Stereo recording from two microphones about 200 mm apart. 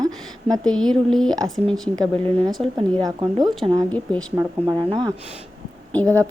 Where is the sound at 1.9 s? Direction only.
20° right (ahead or behind).